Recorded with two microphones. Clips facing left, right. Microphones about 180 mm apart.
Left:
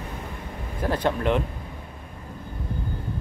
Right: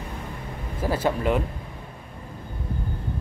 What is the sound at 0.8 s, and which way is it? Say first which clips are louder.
Speech: even; 5° right (ahead or behind).